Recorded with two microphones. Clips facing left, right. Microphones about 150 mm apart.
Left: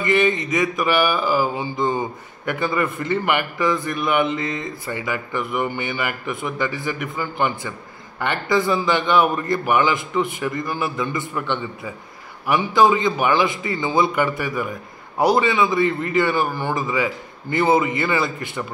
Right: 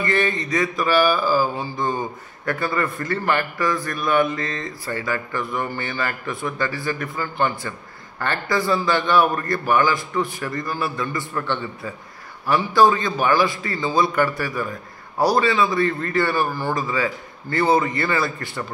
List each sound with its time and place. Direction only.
0.0 s mantra: 20° left (ahead or behind)
8.2 s a man's voice: 20° left (ahead or behind)
12.4 s mantra: 20° left (ahead or behind)